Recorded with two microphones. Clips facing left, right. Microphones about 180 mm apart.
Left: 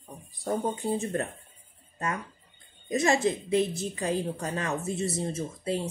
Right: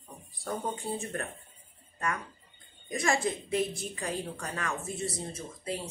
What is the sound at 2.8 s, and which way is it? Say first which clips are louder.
Speech: left 5 dB; 20° left (ahead or behind).